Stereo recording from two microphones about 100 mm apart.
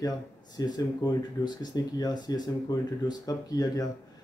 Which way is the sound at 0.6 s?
40° left (ahead or behind).